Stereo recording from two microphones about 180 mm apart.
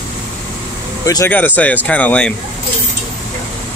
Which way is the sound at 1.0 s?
15° left (ahead or behind).